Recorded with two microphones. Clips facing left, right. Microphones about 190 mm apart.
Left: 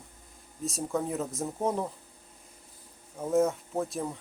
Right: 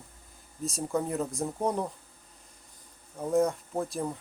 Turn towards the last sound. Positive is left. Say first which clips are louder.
# even
turn(degrees=0)  # may be behind; listen again after turning